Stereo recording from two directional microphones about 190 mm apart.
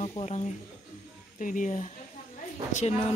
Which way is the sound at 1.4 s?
45° left (ahead or behind).